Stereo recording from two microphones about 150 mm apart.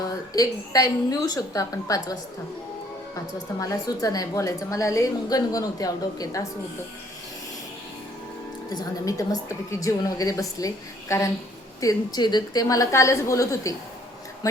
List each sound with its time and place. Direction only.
0.0 s a woman's voice: 25° left (ahead or behind)
3.3 s a woman's voice: 25° left (ahead or behind)
8.7 s a woman's voice: 25° left (ahead or behind)